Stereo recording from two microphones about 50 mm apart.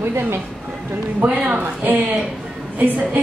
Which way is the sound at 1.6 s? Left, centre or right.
Right.